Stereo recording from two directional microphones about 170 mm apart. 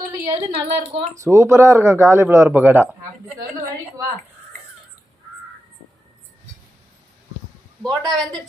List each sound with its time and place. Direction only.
0.0 s a sound: 20° right (ahead or behind)
0.3 s speech: 35° right (ahead or behind)
1.1 s speech: 15° right (ahead or behind)
7.8 s a man's voice: 25° right (ahead or behind)